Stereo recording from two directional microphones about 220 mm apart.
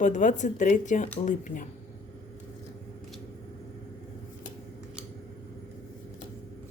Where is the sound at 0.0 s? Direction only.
35° left (ahead or behind).